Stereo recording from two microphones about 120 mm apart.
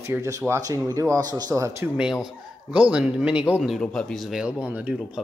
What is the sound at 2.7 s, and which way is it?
Speech, 10° right (ahead or behind).